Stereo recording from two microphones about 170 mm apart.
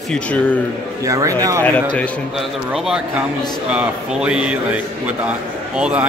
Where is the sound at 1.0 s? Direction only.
20° right (ahead or behind).